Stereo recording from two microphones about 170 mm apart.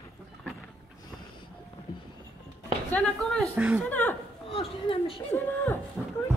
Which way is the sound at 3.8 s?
10° left (ahead or behind).